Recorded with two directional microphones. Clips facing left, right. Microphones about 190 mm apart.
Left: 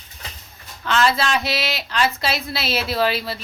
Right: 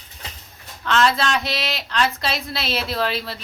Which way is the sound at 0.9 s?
5° left (ahead or behind).